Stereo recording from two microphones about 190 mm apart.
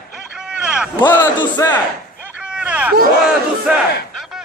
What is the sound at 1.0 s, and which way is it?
Speech, 10° left (ahead or behind).